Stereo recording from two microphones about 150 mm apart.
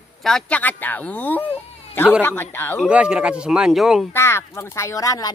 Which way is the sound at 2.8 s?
10° right (ahead or behind).